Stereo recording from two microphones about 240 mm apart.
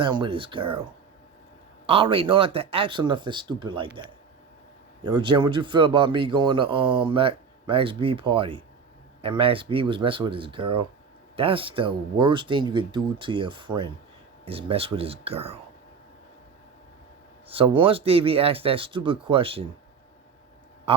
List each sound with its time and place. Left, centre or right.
0.0 s speech: centre
1.9 s speech: right
5.0 s speech: centre
17.5 s speech: right
20.9 s speech: right